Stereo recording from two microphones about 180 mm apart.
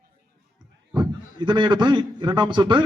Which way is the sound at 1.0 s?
25° right (ahead or behind).